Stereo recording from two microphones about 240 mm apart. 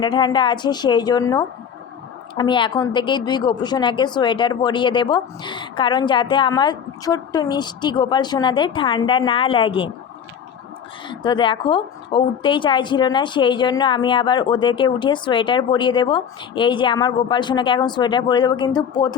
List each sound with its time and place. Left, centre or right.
0.0 s a woman's voice: centre
11.1 s a woman's voice: centre